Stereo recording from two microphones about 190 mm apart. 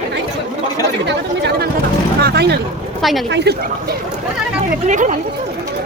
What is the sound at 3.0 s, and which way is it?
Speech, centre (ahead or behind).